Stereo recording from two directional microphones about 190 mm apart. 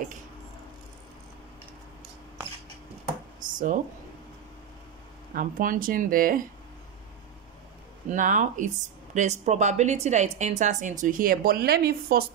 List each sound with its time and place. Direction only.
3.5 s speech: 45° right (ahead or behind)
5.3 s speech: 45° right (ahead or behind)
8.1 s speech: 40° right (ahead or behind)